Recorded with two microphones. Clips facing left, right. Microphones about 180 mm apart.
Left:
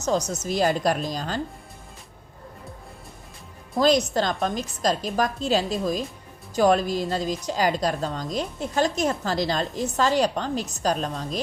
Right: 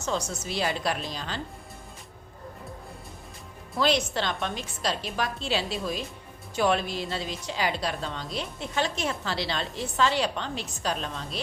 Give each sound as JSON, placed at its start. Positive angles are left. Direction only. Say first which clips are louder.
{"t": 0.0, "sound": "a woman's voice", "louder": "left 6 dB", "side_deg": 40}
{"t": 3.8, "sound": "a woman's voice", "louder": "left 5 dB", "side_deg": 40}